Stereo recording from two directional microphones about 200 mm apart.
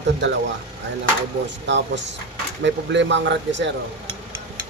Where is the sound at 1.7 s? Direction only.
65° right (ahead or behind).